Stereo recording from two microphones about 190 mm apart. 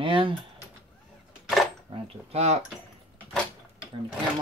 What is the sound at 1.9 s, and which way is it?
Speech, 30° right (ahead or behind).